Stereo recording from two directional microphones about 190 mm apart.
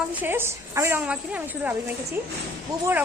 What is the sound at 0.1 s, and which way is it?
A woman's voice, 10° right (ahead or behind).